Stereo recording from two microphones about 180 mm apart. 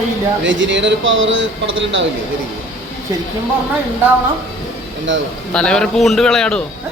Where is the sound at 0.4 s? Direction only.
90° right.